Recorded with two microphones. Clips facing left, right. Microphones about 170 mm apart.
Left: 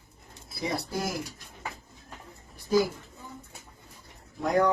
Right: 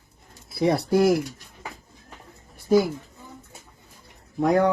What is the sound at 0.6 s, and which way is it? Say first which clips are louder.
Speech: right 12 dB; 65° right (ahead or behind).